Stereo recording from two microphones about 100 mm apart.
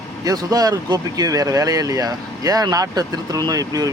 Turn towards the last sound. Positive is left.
turn(degrees=-35)  # may be behind; listen again after turning